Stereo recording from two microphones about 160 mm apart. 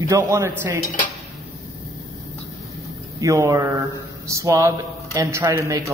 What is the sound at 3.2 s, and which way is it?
Speech, 20° right (ahead or behind).